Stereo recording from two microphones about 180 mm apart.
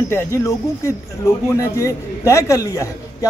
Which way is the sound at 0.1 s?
15° left (ahead or behind).